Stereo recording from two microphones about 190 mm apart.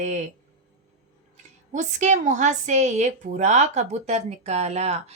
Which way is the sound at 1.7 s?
40° right (ahead or behind).